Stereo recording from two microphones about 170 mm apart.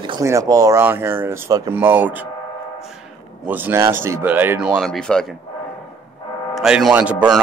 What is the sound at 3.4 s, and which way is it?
Speech, 10° right (ahead or behind).